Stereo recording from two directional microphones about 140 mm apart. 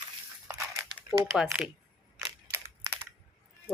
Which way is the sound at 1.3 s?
Centre (ahead or behind).